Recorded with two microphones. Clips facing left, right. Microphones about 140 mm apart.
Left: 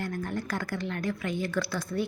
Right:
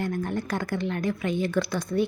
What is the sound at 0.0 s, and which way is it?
Speech, 20° right (ahead or behind).